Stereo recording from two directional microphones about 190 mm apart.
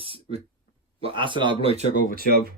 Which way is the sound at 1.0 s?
25° right (ahead or behind).